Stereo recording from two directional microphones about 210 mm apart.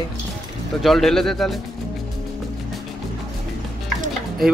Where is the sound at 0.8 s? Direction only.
Centre (ahead or behind).